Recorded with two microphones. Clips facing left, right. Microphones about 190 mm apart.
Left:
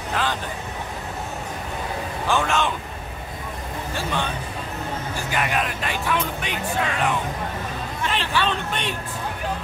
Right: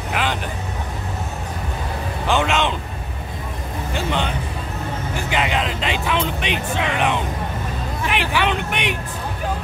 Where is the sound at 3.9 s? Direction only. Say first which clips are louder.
Right 4 dB; 20° right (ahead or behind).